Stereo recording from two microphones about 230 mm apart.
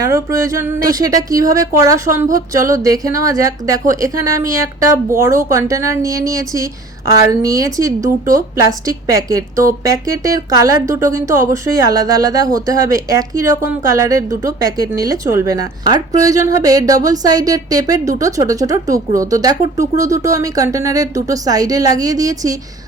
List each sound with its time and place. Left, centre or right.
0.0 s speech: centre
9.6 s speech: centre